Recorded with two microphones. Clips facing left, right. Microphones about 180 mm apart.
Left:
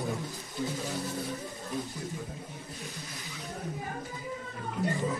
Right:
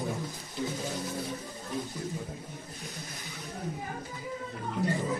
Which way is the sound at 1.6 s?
Centre (ahead or behind).